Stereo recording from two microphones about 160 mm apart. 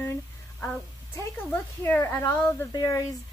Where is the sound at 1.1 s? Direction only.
15° left (ahead or behind).